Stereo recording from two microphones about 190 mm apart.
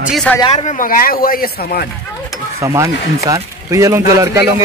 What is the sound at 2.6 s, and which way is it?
A man's voice, 15° right (ahead or behind).